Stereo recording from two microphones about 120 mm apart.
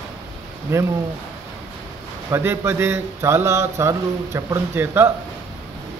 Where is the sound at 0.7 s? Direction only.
20° right (ahead or behind).